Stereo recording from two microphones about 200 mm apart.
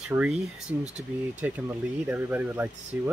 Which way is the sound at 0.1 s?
5° right (ahead or behind).